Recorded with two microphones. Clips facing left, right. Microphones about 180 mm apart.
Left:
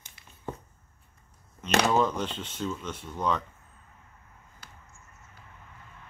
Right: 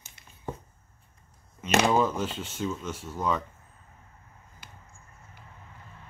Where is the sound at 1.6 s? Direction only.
10° right (ahead or behind).